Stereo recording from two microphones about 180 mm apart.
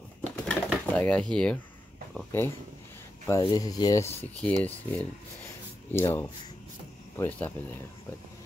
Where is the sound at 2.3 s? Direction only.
10° left (ahead or behind).